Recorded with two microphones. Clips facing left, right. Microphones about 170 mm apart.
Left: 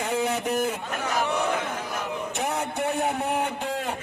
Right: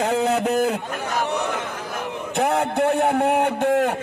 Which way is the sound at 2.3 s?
60° right (ahead or behind).